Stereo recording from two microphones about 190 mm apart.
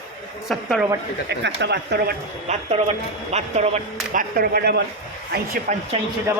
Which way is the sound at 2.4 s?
35° right (ahead or behind).